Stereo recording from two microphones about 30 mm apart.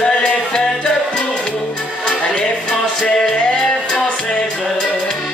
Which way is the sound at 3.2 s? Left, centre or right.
Left.